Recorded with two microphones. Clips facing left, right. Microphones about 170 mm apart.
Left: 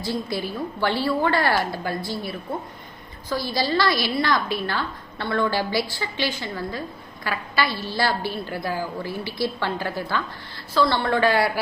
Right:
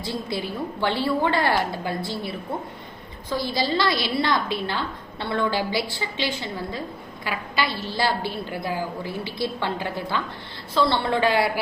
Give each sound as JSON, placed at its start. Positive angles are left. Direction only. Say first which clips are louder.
{"t": 0.0, "sound": "a woman's voice", "louder": "left 2 dB", "side_deg": -20}